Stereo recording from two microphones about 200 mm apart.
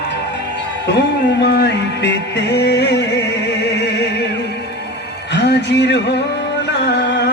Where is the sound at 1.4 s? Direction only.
55° left (ahead or behind).